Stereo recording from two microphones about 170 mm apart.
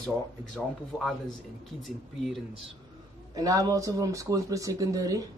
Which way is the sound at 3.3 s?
20° right (ahead or behind).